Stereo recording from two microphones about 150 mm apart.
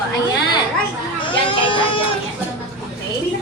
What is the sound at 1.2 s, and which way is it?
Speech, 35° left (ahead or behind).